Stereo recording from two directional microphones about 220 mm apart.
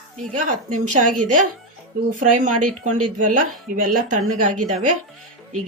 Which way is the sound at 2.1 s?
35° right (ahead or behind).